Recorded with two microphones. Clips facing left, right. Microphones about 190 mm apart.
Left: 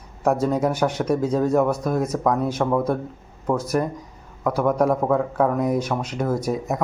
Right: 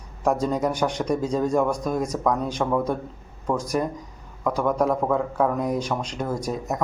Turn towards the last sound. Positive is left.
turn(degrees=10)  # may be behind; listen again after turning